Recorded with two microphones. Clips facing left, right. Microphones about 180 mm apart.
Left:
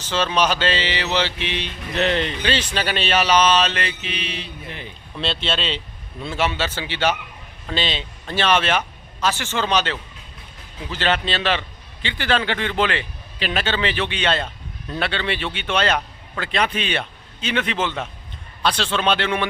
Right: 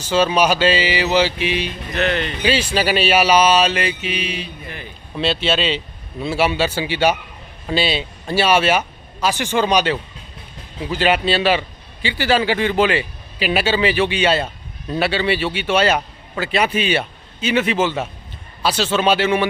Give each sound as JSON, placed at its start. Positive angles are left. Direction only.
{"t": 0.0, "sound": "a man's voice", "side_deg": -10}
{"t": 2.0, "sound": "speech", "side_deg": 25}
{"t": 2.4, "sound": "a man's voice", "side_deg": -10}